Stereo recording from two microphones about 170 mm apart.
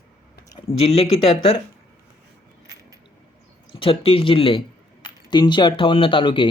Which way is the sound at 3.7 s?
30° left (ahead or behind).